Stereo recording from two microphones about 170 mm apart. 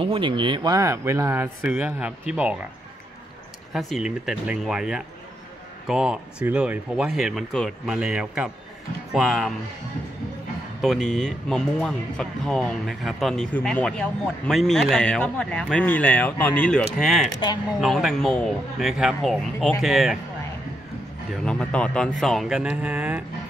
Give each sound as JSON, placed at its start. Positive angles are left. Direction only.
{"t": 0.0, "sound": "speech", "side_deg": -30}
{"t": 3.7, "sound": "speech", "side_deg": 0}
{"t": 10.8, "sound": "speech", "side_deg": 5}
{"t": 21.5, "sound": "speech", "side_deg": 5}